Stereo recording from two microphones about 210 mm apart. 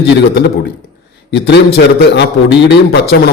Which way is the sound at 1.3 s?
50° left (ahead or behind).